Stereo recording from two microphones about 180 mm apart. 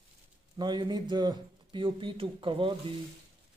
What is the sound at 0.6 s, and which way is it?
Speech, 25° right (ahead or behind).